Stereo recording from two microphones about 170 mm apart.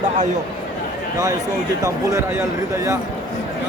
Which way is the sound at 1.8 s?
20° right (ahead or behind).